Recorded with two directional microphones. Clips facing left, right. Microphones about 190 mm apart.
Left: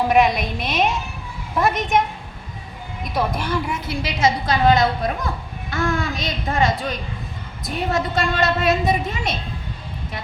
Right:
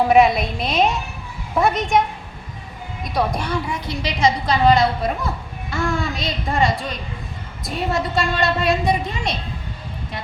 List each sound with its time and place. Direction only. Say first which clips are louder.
0.1 s a woman's voice: right 3 dB; centre (ahead or behind)
3.0 s a woman's voice: right 1 dB; 5° left (ahead or behind)